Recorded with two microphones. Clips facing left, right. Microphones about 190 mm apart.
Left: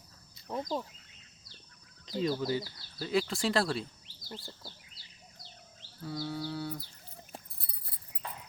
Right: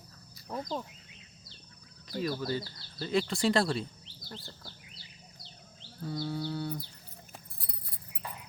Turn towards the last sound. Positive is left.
turn(degrees=0)  # may be behind; listen again after turning